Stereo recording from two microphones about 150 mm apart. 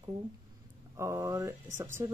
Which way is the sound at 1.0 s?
20° right (ahead or behind).